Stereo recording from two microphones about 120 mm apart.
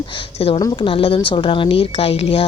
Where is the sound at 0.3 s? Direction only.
55° left (ahead or behind).